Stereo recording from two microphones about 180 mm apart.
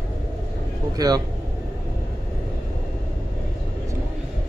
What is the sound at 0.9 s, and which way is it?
Speech, 20° right (ahead or behind).